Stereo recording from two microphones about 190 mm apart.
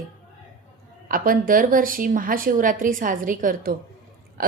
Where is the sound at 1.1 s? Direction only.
45° right (ahead or behind).